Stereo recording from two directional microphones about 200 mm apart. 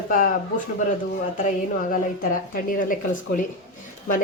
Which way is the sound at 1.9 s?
45° left (ahead or behind).